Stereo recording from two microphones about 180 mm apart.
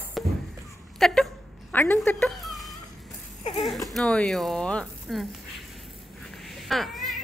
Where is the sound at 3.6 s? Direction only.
Centre (ahead or behind).